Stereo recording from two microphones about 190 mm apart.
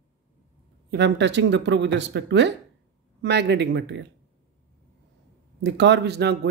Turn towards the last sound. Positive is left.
turn(degrees=-60)  # may be behind; listen again after turning